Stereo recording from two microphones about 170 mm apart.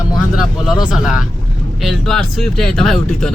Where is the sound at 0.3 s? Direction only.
5° right (ahead or behind).